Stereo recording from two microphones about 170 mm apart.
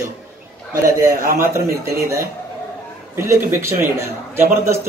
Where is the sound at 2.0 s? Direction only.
15° right (ahead or behind).